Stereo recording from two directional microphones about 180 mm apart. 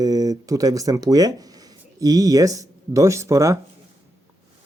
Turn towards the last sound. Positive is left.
turn(degrees=-15)  # may be behind; listen again after turning